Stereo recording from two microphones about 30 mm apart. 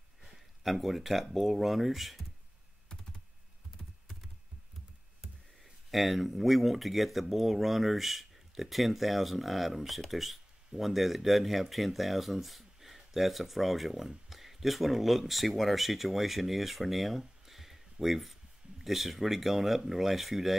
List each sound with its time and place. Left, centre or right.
0.7 s speech: centre
3.8 s computer keyboard: centre
5.6 s speech: centre